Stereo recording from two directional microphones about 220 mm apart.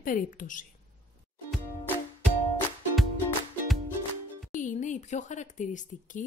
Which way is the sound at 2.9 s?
Centre (ahead or behind).